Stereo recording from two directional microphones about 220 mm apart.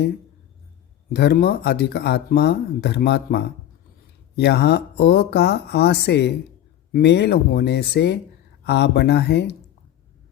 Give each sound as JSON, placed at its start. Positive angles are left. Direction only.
{"t": 1.1, "sound": "speech", "side_deg": 45}